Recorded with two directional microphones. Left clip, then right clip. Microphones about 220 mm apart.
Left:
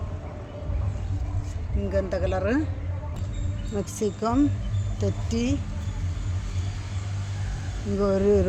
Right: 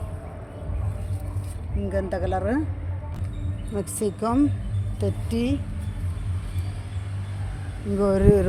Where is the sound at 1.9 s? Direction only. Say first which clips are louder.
Even; centre (ahead or behind).